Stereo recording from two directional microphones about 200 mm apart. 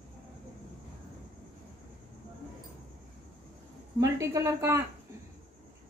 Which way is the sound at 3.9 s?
15° right (ahead or behind).